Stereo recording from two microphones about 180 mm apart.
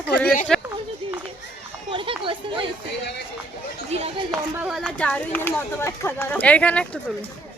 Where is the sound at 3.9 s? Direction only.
35° right (ahead or behind).